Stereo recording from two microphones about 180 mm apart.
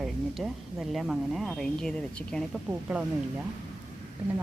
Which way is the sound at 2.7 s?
5° right (ahead or behind).